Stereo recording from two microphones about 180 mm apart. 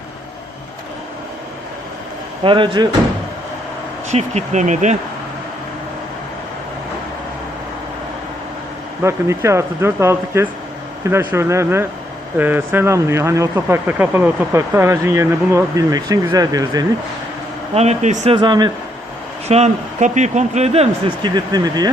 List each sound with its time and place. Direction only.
2.4 s speech: 25° right (ahead or behind)
4.1 s speech: 40° right (ahead or behind)
9.0 s speech: 15° right (ahead or behind)
17.7 s speech: 40° right (ahead or behind)
18.3 s speech: 25° right (ahead or behind)
19.5 s speech: 40° right (ahead or behind); by 21.8 s 20° right (ahead or behind)